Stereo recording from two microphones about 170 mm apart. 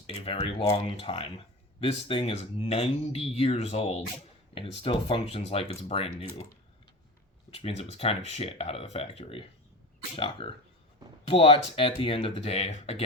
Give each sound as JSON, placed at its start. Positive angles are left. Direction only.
{"t": 0.1, "sound": "speech", "side_deg": 35}
{"t": 7.5, "sound": "speech", "side_deg": 35}